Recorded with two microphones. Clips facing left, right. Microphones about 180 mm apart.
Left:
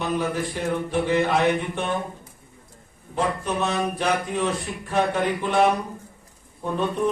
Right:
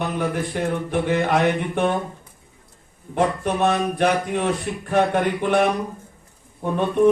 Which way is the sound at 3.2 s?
60° right (ahead or behind).